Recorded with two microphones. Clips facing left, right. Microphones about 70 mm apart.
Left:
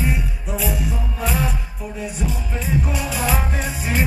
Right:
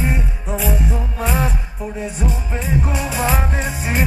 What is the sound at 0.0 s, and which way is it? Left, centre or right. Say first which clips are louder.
Music: right 2 dB; right.